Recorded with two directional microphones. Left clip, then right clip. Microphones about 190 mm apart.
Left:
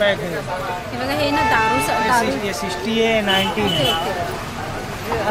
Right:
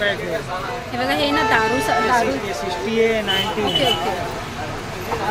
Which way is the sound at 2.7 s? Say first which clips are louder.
Right 1 dB; 55° left (ahead or behind).